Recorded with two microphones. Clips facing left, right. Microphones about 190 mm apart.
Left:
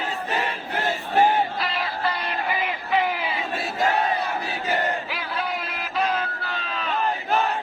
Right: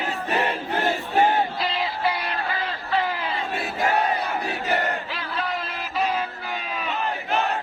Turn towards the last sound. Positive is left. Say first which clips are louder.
# even
turn(degrees=-5)  # may be behind; listen again after turning